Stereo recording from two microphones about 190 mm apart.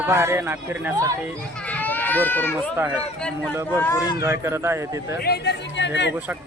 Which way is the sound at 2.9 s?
5° left (ahead or behind).